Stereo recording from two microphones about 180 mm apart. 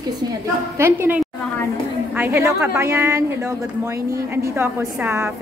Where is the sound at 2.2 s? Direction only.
10° right (ahead or behind).